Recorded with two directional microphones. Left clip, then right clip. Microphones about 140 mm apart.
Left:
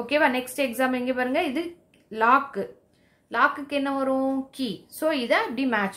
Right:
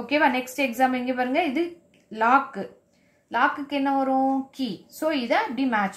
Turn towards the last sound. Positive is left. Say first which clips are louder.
# right 1 dB
turn(degrees=30)  # may be behind; listen again after turning